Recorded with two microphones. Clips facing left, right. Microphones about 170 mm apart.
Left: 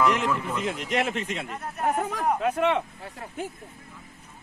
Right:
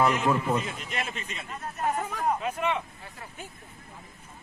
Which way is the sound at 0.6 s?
75° left (ahead or behind).